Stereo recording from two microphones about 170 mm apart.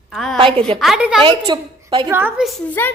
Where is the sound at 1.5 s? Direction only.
25° right (ahead or behind).